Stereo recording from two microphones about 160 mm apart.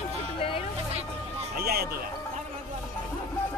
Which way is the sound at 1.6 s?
75° right (ahead or behind).